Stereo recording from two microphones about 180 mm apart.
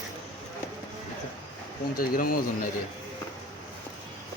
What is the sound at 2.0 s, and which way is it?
Speech, 50° left (ahead or behind).